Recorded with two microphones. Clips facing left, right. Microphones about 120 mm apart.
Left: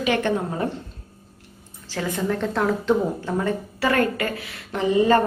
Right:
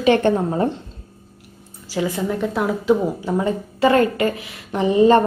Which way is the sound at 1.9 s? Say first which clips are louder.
Right 3 dB; 10° right (ahead or behind).